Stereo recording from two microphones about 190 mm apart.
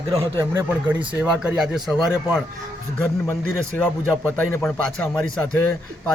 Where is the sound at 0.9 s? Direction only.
10° right (ahead or behind).